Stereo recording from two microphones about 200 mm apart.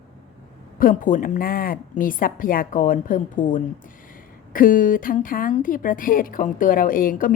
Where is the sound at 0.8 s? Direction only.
45° left (ahead or behind).